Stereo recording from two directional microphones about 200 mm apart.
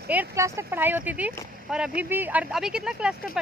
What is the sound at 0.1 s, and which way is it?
Speech, 10° right (ahead or behind).